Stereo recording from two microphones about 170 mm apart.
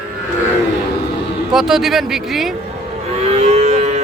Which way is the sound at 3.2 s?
40° right (ahead or behind).